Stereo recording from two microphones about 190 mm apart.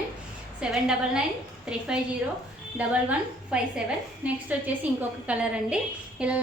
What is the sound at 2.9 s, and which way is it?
A woman's voice, 5° right (ahead or behind).